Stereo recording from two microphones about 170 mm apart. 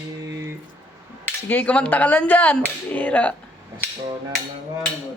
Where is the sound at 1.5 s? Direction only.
10° left (ahead or behind).